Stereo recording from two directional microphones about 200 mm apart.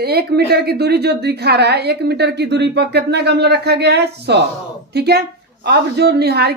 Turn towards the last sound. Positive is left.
turn(degrees=-55)  # may be behind; listen again after turning